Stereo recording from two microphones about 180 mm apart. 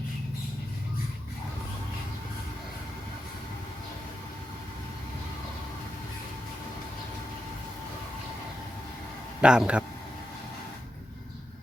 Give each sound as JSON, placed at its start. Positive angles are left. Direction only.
{"t": 9.4, "sound": "speech", "side_deg": -5}